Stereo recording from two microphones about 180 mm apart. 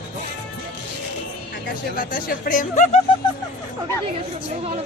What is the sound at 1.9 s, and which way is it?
Speech, 50° left (ahead or behind).